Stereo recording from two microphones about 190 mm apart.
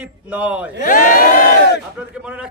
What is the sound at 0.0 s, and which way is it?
Speech, 5° right (ahead or behind).